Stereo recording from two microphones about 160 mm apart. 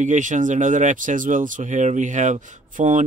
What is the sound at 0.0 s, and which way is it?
Speech, 50° right (ahead or behind).